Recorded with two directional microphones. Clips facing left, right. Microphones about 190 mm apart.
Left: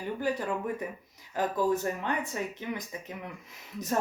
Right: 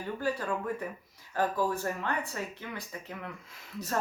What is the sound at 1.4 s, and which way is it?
Speech, 20° left (ahead or behind).